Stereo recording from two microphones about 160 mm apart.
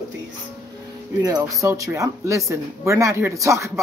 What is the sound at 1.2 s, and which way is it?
Speech, 20° right (ahead or behind).